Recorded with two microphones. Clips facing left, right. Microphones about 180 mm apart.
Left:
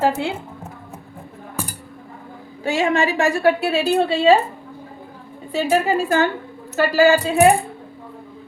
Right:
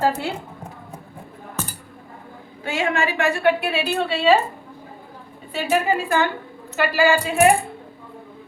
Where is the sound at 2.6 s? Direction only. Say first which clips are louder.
Left 4 dB; 40° left (ahead or behind).